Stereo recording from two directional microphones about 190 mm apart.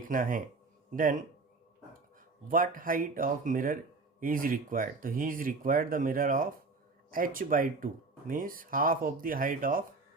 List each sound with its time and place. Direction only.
0.1 s speech: 45° right (ahead or behind)
2.5 s speech: 45° right (ahead or behind)